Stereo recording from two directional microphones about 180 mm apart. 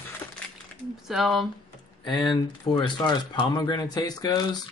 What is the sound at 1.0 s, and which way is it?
Speech, centre (ahead or behind).